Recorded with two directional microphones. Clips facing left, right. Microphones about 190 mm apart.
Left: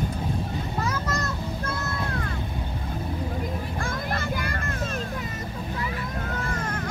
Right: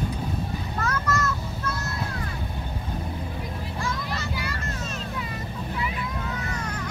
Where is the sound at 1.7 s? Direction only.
50° left (ahead or behind).